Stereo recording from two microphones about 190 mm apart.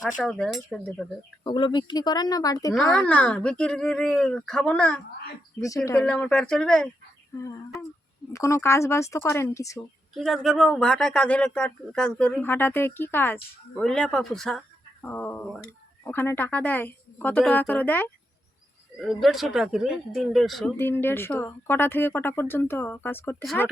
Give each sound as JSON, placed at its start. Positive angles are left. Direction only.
{"t": 0.0, "sound": "speech", "side_deg": 0}
{"t": 1.5, "sound": "speech", "side_deg": 25}
{"t": 2.9, "sound": "a woman's voice", "side_deg": 5}
{"t": 6.0, "sound": "speech", "side_deg": 5}
{"t": 7.3, "sound": "a woman's voice", "side_deg": 15}
{"t": 10.2, "sound": "a woman's voice", "side_deg": 0}
{"t": 20.7, "sound": "a woman's voice", "side_deg": 10}